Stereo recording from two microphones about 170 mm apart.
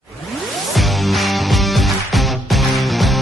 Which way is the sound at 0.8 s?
Centre (ahead or behind).